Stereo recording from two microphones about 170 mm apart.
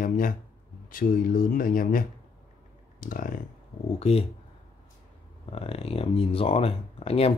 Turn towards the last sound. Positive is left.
turn(degrees=35)  # may be behind; listen again after turning